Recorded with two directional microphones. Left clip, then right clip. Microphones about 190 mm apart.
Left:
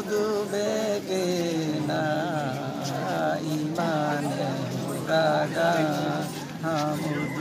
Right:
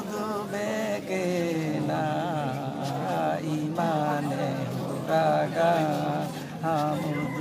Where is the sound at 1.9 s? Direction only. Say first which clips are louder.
Left 2 dB; 5° right (ahead or behind).